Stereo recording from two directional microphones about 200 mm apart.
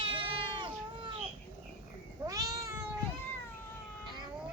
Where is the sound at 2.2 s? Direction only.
15° right (ahead or behind).